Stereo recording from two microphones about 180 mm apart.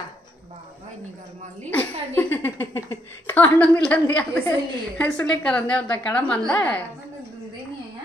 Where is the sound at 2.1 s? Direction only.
10° left (ahead or behind).